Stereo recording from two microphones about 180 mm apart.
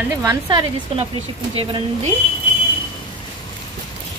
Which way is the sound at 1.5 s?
30° right (ahead or behind).